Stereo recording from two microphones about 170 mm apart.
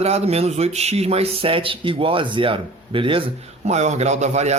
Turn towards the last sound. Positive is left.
turn(degrees=-40)  # may be behind; listen again after turning